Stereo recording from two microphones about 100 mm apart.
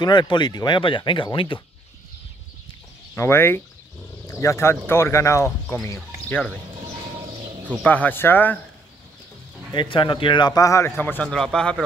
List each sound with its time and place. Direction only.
0.0 s a man's voice: 45° left (ahead or behind)
0.7 s speech: 55° left (ahead or behind)
3.2 s speech: 25° left (ahead or behind)
6.2 s speech: 15° left (ahead or behind)
7.8 s speech: 15° left (ahead or behind)
9.8 s a man's voice: 55° left (ahead or behind); by 10.9 s 35° left (ahead or behind)
11.0 s a man's voice: 20° left (ahead or behind)